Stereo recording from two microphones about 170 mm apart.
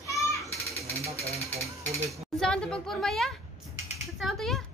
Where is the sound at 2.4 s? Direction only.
5° left (ahead or behind).